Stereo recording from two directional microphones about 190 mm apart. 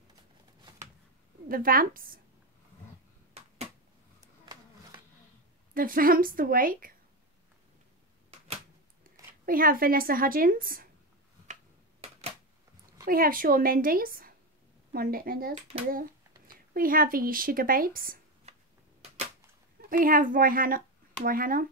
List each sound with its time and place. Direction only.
1.5 s speech: 50° right (ahead or behind)
5.8 s speech: 50° right (ahead or behind)
9.5 s speech: 50° right (ahead or behind)
13.0 s speech: 50° right (ahead or behind)
16.7 s speech: 50° right (ahead or behind)
19.9 s speech: 45° right (ahead or behind)